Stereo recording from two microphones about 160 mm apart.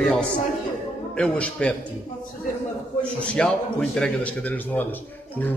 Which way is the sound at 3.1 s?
5° left (ahead or behind).